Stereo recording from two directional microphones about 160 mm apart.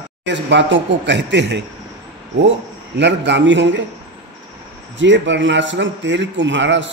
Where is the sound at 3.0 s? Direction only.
90° right.